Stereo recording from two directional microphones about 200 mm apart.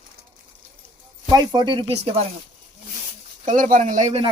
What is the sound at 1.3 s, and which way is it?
Speech, 25° right (ahead or behind).